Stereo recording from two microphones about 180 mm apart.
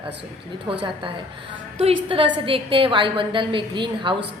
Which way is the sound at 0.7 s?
30° right (ahead or behind).